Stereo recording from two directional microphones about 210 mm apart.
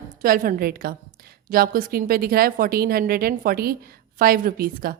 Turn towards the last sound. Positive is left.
turn(degrees=-45)  # may be behind; listen again after turning